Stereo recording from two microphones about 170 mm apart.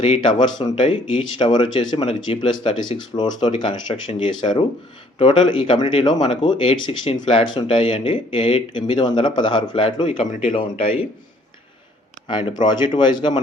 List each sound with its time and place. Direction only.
0.0 s a man's voice: 30° left (ahead or behind)
12.6 s speech: 25° left (ahead or behind)